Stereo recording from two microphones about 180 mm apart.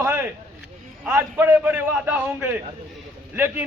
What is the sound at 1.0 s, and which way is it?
A man's voice, 15° right (ahead or behind).